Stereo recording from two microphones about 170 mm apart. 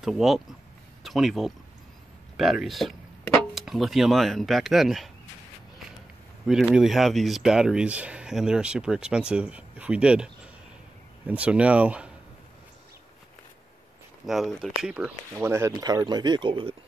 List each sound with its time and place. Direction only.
0.0 s speech: centre (ahead or behind)
6.4 s speech: 5° right (ahead or behind)
14.2 s speech: centre (ahead or behind)
15.3 s speech: 15° right (ahead or behind)